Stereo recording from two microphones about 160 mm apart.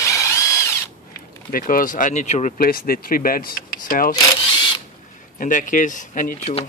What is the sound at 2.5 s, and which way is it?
Speech, 65° left (ahead or behind).